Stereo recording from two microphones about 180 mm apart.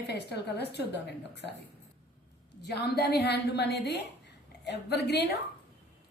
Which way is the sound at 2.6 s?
65° left (ahead or behind).